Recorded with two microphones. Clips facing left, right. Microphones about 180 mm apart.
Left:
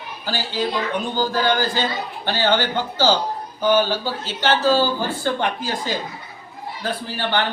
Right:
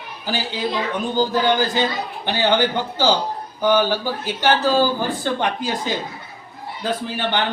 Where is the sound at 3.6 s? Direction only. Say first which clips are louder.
Right 1 dB; 15° right (ahead or behind).